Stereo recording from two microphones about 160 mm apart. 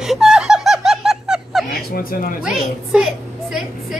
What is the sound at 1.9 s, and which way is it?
Speech, 65° left (ahead or behind).